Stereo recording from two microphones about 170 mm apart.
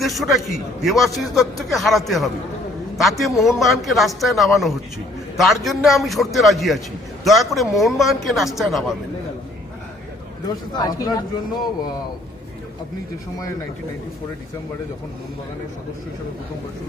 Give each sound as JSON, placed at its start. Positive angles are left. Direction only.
{"t": 0.0, "sound": "a man's voice", "side_deg": 0}
{"t": 10.8, "sound": "speech", "side_deg": 25}